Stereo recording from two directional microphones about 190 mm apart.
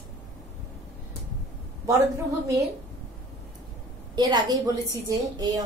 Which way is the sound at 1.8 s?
15° right (ahead or behind).